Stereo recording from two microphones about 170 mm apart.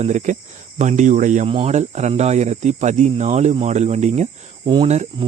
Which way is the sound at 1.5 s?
35° right (ahead or behind).